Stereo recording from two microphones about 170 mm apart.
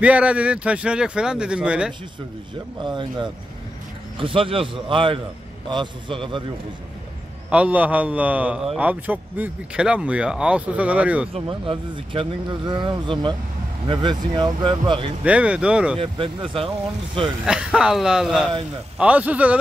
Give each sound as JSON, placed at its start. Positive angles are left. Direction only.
{"t": 0.0, "sound": "a man's voice", "side_deg": -5}
{"t": 2.8, "sound": "speech", "side_deg": -25}
{"t": 7.4, "sound": "a man's voice", "side_deg": -10}
{"t": 11.3, "sound": "speech", "side_deg": -30}
{"t": 15.2, "sound": "a man's voice", "side_deg": -5}
{"t": 16.0, "sound": "speech", "side_deg": -30}
{"t": 17.5, "sound": "a man's voice", "side_deg": -5}